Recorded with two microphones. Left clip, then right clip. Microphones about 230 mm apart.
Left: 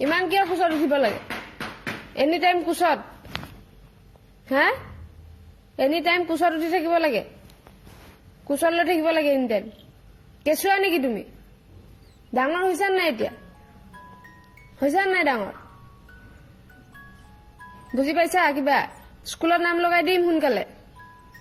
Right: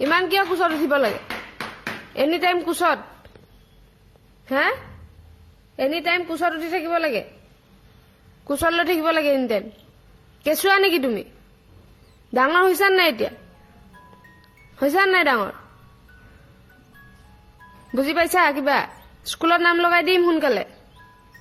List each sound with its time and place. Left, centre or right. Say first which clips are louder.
0.0 s a woman's voice: right 2 dB; right
4.4 s a man's voice: even; centre
8.4 s a woman's voice: right 1 dB; right
12.3 s a woman's voice: right 5 dB; right
14.8 s a woman's voice: right 3 dB; right
17.9 s a woman's voice: right 2 dB; right